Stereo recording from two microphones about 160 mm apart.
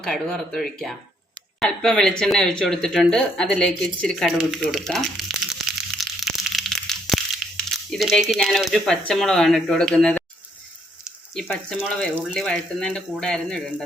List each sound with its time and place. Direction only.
0.0 s speech: 5° left (ahead or behind)
6.0 s crushing: centre (ahead or behind)
7.7 s speech: centre (ahead or behind)